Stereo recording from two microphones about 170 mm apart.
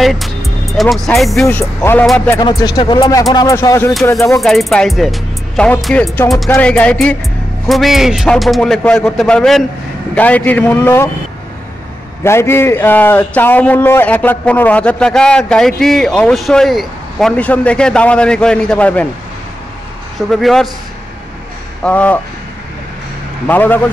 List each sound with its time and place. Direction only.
0.0 s a man's voice: centre (ahead or behind)
2.3 s a man's voice: 25° left (ahead or behind)
4.4 s a man's voice: centre (ahead or behind)
12.2 s a man's voice: 15° left (ahead or behind)
20.2 s a man's voice: centre (ahead or behind)
21.8 s a man's voice: 10° left (ahead or behind)
23.4 s a man's voice: 10° left (ahead or behind)